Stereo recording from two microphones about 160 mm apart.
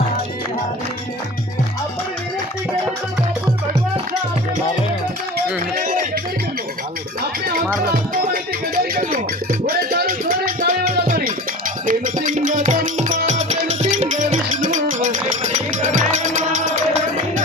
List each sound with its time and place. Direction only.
5.7 s music: 60° right (ahead or behind)
8.1 s music: 65° right (ahead or behind)